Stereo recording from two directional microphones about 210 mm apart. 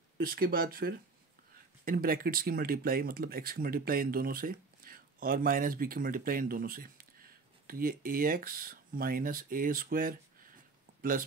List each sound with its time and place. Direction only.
0.2 s speech: 45° right (ahead or behind)